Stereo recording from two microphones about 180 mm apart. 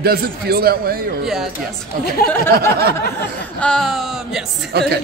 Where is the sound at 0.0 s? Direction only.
60° right (ahead or behind).